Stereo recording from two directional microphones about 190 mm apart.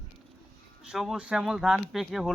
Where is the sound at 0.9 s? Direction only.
5° right (ahead or behind).